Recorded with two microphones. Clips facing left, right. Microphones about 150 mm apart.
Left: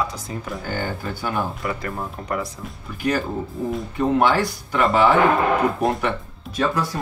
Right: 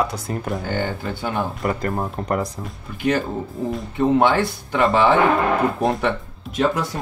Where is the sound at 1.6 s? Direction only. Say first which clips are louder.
Right 4 dB; 40° right (ahead or behind).